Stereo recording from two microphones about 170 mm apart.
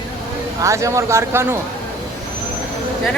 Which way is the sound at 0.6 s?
20° right (ahead or behind).